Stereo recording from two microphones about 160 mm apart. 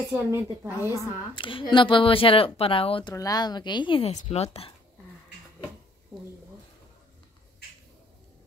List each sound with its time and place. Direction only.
0.1 s a woman's voice: 15° right (ahead or behind)
0.8 s a woman's voice: 25° left (ahead or behind)
4.1 s a woman's voice: 45° left (ahead or behind)